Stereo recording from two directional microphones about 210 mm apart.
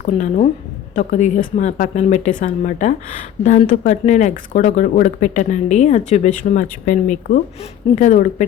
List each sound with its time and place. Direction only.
0.0 s speech: 35° left (ahead or behind)